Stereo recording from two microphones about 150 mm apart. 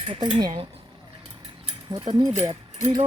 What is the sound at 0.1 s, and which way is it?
Speech, 35° right (ahead or behind).